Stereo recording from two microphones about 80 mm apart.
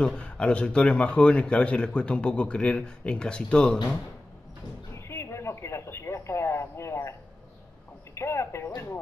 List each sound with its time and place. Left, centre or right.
0.0 s speech: centre
4.9 s radio: left
8.1 s speech: left